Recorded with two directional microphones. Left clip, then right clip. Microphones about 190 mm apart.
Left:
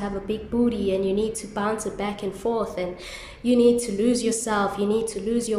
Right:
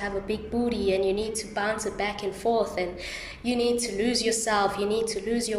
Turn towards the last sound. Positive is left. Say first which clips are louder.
# left 2 dB
turn(degrees=15)  # may be behind; listen again after turning